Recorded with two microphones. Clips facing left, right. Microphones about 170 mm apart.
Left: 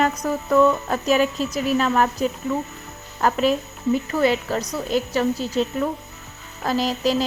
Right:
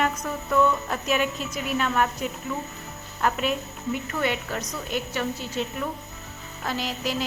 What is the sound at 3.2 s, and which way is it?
A woman's voice, 35° left (ahead or behind).